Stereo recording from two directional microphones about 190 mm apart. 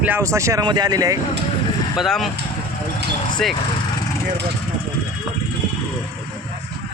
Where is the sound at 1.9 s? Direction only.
Centre (ahead or behind).